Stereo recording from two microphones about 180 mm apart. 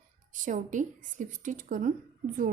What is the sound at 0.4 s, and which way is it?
A woman's voice, 45° right (ahead or behind).